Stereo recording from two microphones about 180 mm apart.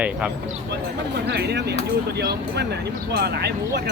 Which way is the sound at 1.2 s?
70° right (ahead or behind).